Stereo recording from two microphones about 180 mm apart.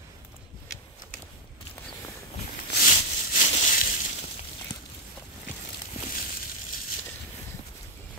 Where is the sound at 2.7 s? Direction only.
50° left (ahead or behind).